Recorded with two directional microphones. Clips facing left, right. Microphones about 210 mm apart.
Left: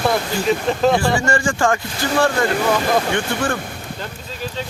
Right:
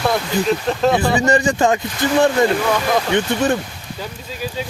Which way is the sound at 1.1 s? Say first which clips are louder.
Right 3 dB; 20° right (ahead or behind).